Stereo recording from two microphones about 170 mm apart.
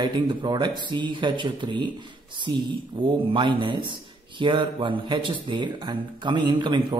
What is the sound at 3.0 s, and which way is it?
A man's voice, 30° right (ahead or behind).